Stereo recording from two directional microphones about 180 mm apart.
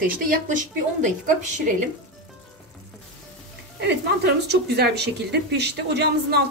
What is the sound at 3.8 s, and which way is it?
Speech, 65° right (ahead or behind).